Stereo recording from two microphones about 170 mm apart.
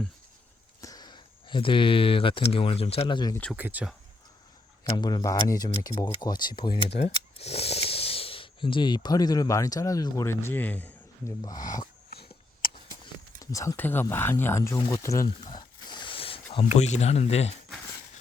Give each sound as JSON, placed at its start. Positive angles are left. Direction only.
{"t": 0.8, "sound": "speech", "side_deg": 20}
{"t": 3.5, "sound": "speech", "side_deg": -10}
{"t": 4.8, "sound": "speech", "side_deg": 25}
{"t": 7.0, "sound": "speech", "side_deg": 35}
{"t": 11.4, "sound": "speech", "side_deg": 20}
{"t": 13.4, "sound": "speech", "side_deg": 20}
{"t": 14.8, "sound": "a sound", "side_deg": 25}
{"t": 16.7, "sound": "speech", "side_deg": 40}